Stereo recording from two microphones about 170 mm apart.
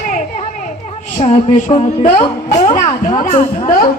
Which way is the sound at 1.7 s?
35° left (ahead or behind).